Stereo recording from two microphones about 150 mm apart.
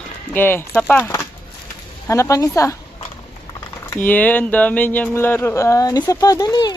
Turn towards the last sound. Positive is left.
turn(degrees=25)  # may be behind; listen again after turning